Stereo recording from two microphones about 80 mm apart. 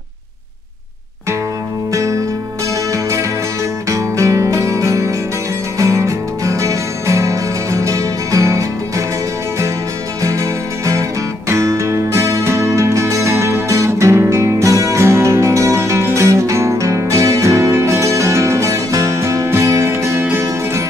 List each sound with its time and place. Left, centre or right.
2.9 s music: right
10.2 s music: right